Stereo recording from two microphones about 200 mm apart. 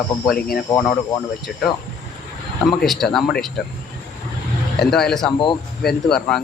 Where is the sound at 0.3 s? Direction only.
45° left (ahead or behind).